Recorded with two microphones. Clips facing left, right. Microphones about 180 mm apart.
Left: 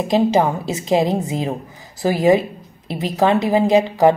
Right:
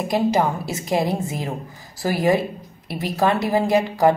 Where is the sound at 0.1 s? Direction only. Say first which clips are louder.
Left 4 dB; 20° left (ahead or behind).